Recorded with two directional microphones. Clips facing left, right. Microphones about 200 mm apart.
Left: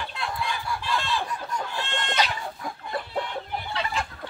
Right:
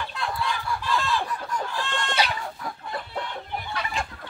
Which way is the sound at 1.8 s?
25° left (ahead or behind).